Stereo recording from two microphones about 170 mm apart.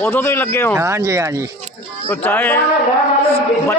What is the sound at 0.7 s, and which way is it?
Speech, 15° right (ahead or behind).